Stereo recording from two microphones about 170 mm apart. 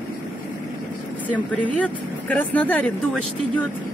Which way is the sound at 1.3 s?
10° left (ahead or behind).